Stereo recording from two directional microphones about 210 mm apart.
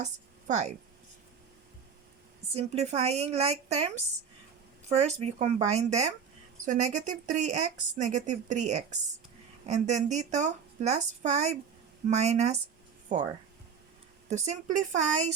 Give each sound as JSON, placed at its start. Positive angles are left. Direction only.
{"t": 0.0, "sound": "a woman's voice", "side_deg": -35}
{"t": 2.5, "sound": "speech", "side_deg": -30}
{"t": 4.9, "sound": "speech", "side_deg": -30}